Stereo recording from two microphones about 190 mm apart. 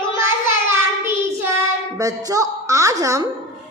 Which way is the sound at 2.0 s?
20° right (ahead or behind).